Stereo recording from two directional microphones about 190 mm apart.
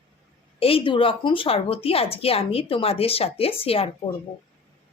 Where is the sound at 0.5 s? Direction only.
30° left (ahead or behind).